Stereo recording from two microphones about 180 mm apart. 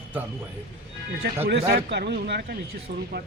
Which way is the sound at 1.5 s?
65° right (ahead or behind).